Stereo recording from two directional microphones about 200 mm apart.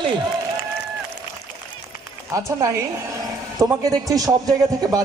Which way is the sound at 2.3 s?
15° right (ahead or behind).